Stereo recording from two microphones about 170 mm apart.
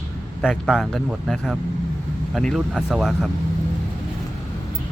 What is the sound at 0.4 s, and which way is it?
Speech, 5° right (ahead or behind).